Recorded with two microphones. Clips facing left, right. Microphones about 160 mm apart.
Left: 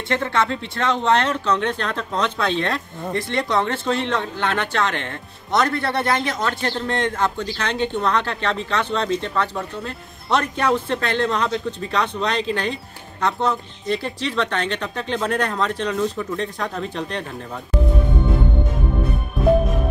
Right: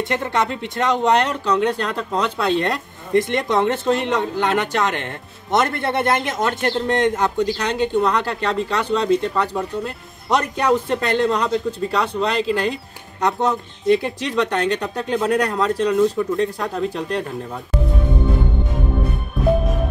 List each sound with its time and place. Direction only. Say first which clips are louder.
0.1 s speech: left 5 dB; 15° right (ahead or behind)
13.2 s speech: right 2 dB; 15° right (ahead or behind)